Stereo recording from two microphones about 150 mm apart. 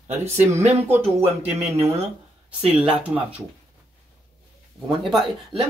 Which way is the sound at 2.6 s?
10° right (ahead or behind).